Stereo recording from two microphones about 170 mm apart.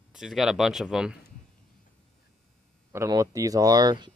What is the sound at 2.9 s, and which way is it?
Speech, 15° right (ahead or behind).